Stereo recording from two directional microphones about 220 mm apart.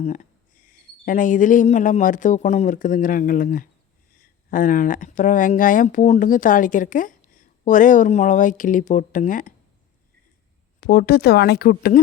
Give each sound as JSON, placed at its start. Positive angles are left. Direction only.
{"t": 0.0, "sound": "speech", "side_deg": 35}
{"t": 10.8, "sound": "speech", "side_deg": 45}